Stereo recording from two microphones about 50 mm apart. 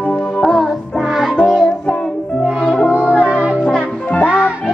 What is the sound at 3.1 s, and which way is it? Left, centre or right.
Music, left.